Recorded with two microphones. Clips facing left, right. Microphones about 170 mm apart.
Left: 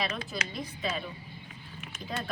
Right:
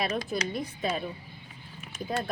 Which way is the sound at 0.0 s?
50° right (ahead or behind).